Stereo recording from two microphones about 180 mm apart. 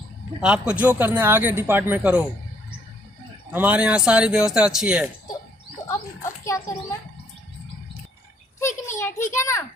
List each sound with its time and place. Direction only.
0.4 s speech: 5° right (ahead or behind)
3.5 s speech: 10° right (ahead or behind)
6.4 s a child's voice: 20° left (ahead or behind)
8.5 s a sound: 15° left (ahead or behind)
9.3 s a child's voice: 15° left (ahead or behind)